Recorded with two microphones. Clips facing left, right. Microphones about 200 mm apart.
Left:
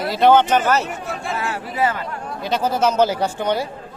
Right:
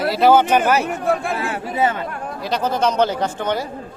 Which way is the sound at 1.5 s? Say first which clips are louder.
Right 1 dB; 25° right (ahead or behind).